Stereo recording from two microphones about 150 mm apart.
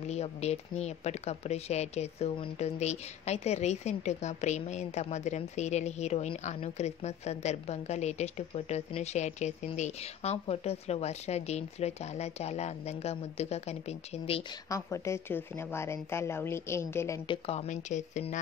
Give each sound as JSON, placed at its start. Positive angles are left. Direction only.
{"t": 0.0, "sound": "a woman's voice", "side_deg": 45}
{"t": 14.7, "sound": "a woman's voice", "side_deg": 20}
{"t": 17.3, "sound": "a woman's voice", "side_deg": 45}